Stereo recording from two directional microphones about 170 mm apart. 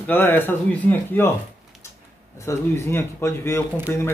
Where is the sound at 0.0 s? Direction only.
10° left (ahead or behind).